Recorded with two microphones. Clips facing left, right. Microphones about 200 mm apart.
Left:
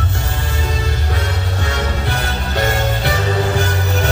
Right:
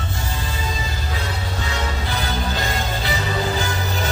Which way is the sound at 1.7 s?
65° left (ahead or behind).